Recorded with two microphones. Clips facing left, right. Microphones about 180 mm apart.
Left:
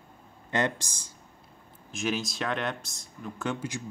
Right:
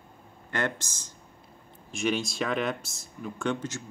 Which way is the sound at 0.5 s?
15° left (ahead or behind).